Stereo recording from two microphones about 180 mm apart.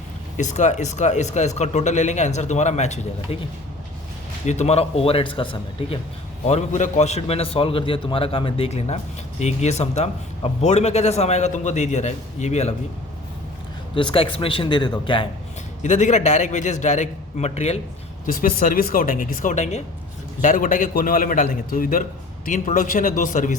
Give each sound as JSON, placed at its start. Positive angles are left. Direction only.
{"t": 0.3, "sound": "a man's voice", "side_deg": 40}
{"t": 4.4, "sound": "a man's voice", "side_deg": 40}
{"t": 6.5, "sound": "a man's voice", "side_deg": 40}
{"t": 13.9, "sound": "speech", "side_deg": 30}
{"t": 15.8, "sound": "a man's voice", "side_deg": 40}
{"t": 18.3, "sound": "a man's voice", "side_deg": 50}